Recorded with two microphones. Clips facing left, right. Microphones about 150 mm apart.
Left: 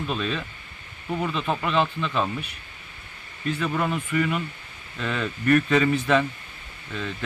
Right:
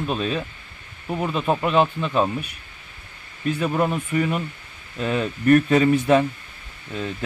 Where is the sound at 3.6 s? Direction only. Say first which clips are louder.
Right 4 dB; 35° right (ahead or behind).